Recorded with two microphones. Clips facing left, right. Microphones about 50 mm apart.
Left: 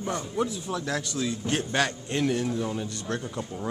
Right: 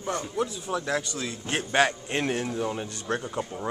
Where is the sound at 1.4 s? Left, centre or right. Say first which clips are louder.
Right 5 dB; centre.